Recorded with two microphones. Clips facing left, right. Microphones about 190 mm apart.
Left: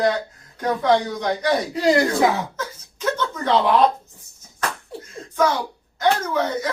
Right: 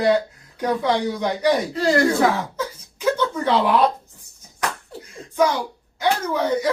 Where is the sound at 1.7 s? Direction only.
15° left (ahead or behind).